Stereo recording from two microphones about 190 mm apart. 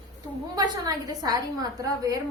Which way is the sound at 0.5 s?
20° right (ahead or behind).